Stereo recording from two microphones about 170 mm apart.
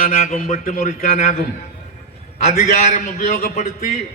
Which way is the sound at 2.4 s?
40° left (ahead or behind).